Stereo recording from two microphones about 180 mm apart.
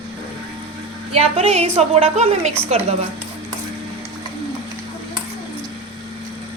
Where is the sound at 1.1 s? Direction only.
35° right (ahead or behind).